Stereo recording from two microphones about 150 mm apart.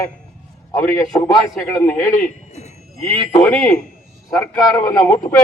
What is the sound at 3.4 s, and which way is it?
A man's voice, 10° left (ahead or behind).